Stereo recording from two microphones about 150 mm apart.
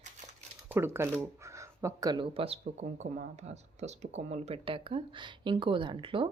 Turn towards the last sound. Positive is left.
turn(degrees=-35)  # may be behind; listen again after turning